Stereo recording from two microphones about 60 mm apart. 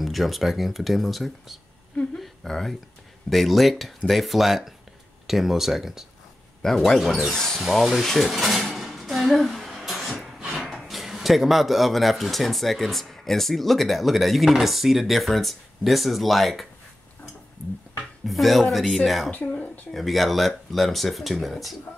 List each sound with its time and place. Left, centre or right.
0.0 s speech: centre
6.6 s speech: centre
7.2 s a sound: centre
10.6 s speech: centre
18.2 s speech: centre
19.5 s speech: left
19.9 s speech: centre